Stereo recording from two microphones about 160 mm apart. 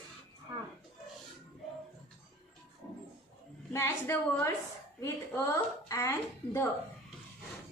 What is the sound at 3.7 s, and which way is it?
A woman's voice, 15° left (ahead or behind).